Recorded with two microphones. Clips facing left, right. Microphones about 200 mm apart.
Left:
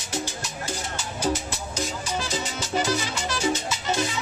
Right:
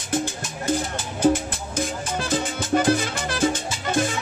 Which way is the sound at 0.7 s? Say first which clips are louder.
Right 10 dB; 55° right (ahead or behind).